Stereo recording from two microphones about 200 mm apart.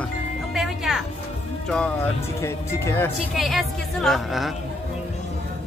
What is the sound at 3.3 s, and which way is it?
Speech, centre (ahead or behind).